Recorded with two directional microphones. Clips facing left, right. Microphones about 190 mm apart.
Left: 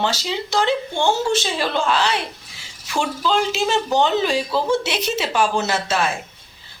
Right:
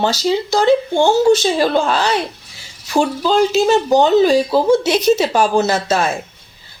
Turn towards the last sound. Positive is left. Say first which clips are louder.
# right 5 dB
turn(degrees=-40)  # may be behind; listen again after turning